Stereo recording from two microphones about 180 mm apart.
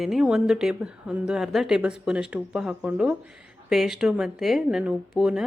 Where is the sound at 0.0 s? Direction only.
Centre (ahead or behind).